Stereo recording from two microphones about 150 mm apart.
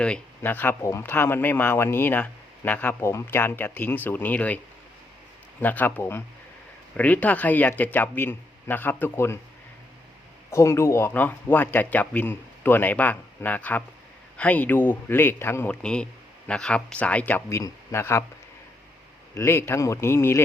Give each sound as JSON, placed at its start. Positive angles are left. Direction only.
{"t": 0.0, "sound": "speech", "side_deg": 10}
{"t": 10.5, "sound": "speech", "side_deg": 20}
{"t": 19.3, "sound": "speech", "side_deg": 20}